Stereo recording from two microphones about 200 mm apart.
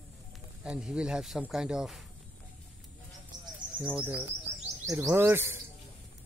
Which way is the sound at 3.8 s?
10° right (ahead or behind).